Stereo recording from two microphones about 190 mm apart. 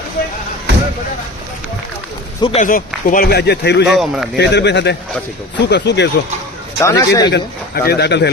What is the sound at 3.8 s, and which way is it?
Speech, centre (ahead or behind).